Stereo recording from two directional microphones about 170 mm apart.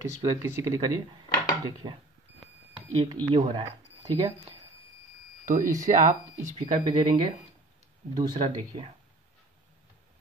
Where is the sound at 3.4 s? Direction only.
40° right (ahead or behind).